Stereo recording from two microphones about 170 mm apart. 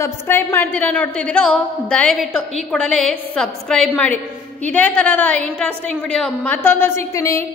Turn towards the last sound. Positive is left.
turn(degrees=20)  # may be behind; listen again after turning